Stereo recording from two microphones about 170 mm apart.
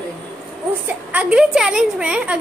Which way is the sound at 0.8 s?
10° right (ahead or behind).